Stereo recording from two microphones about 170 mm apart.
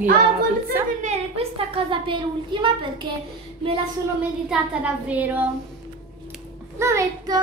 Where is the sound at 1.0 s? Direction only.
40° right (ahead or behind).